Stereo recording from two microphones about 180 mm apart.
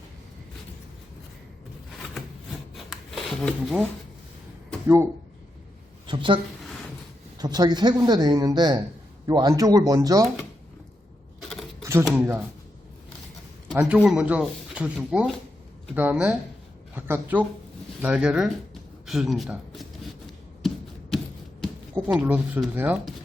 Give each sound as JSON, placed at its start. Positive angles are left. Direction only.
{"t": 2.1, "sound": "rub", "side_deg": 0}
{"t": 6.1, "sound": "speech", "side_deg": -25}
{"t": 11.3, "sound": "a sound", "side_deg": 0}
{"t": 12.0, "sound": "speech", "side_deg": -10}
{"t": 13.7, "sound": "speech", "side_deg": -5}
{"t": 20.6, "sound": "a sound", "side_deg": 0}
{"t": 22.0, "sound": "speech", "side_deg": -5}